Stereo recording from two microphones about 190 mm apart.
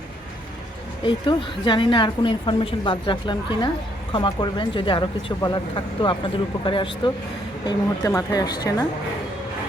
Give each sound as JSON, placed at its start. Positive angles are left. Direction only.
{"t": 1.0, "sound": "speech", "side_deg": 25}